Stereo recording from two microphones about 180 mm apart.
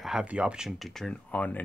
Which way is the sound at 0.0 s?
5° right (ahead or behind).